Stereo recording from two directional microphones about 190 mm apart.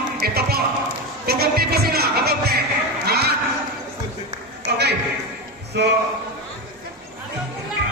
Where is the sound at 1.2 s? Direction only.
55° right (ahead or behind).